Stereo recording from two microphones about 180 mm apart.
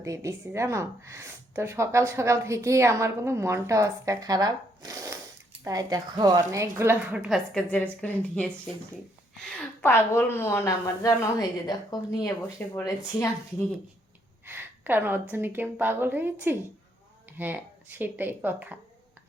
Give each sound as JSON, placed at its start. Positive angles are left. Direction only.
{"t": 0.0, "sound": "a woman's voice", "side_deg": -15}
{"t": 14.4, "sound": "a woman's voice", "side_deg": -10}